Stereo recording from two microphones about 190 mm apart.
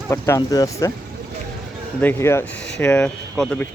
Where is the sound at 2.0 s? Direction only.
15° left (ahead or behind).